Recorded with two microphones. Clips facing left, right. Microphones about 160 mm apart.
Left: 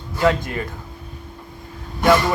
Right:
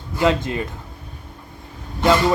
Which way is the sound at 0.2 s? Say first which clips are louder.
Even; 20° right (ahead or behind).